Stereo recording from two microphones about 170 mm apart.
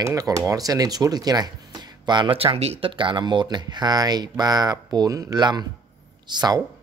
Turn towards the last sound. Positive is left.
turn(degrees=-25)  # may be behind; listen again after turning